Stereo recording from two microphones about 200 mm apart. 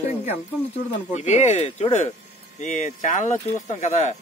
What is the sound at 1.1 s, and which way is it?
Speech, 35° left (ahead or behind).